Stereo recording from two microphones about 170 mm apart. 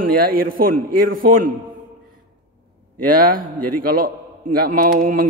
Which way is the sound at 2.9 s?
55° right (ahead or behind).